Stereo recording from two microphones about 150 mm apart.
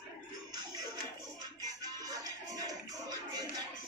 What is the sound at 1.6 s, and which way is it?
Music, 25° right (ahead or behind).